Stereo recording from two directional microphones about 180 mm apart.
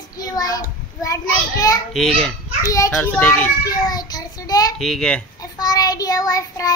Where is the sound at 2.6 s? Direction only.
15° left (ahead or behind).